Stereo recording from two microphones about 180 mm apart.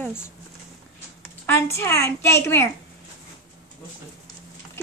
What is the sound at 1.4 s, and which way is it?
Speech, 15° left (ahead or behind).